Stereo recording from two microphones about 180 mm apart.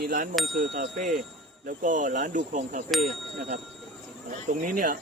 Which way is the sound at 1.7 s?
45° right (ahead or behind).